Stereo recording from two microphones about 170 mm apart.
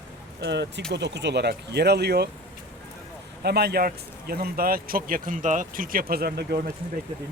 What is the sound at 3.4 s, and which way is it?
A man's voice, 70° right (ahead or behind).